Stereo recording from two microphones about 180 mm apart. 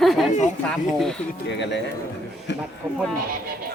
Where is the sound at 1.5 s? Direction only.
75° left (ahead or behind).